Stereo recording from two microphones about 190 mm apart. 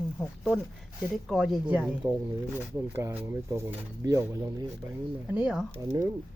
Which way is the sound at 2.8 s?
10° right (ahead or behind).